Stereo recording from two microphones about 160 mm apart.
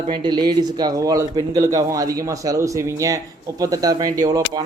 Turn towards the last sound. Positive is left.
turn(degrees=-20)  # may be behind; listen again after turning